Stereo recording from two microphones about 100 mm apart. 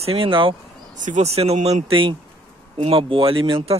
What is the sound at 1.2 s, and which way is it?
Speech, 90° right.